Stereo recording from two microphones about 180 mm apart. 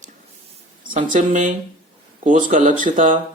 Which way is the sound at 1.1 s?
45° right (ahead or behind).